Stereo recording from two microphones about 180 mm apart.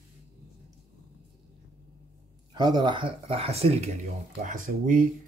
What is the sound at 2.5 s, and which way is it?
Speech, 25° right (ahead or behind).